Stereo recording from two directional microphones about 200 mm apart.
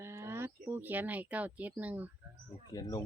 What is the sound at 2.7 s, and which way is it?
Speech, 20° left (ahead or behind).